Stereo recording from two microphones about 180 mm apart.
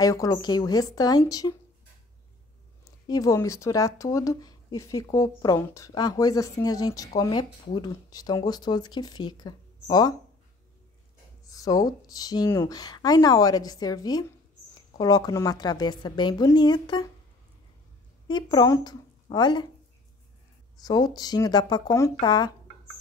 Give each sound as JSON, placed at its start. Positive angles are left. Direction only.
{"t": 0.0, "sound": "speech", "side_deg": 20}
{"t": 2.8, "sound": "speech", "side_deg": 20}
{"t": 11.4, "sound": "speech", "side_deg": 20}
{"t": 18.3, "sound": "speech", "side_deg": 25}
{"t": 20.8, "sound": "speech", "side_deg": 20}